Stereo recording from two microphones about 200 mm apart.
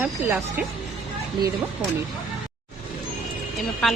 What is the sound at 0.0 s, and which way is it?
Speech, 10° right (ahead or behind).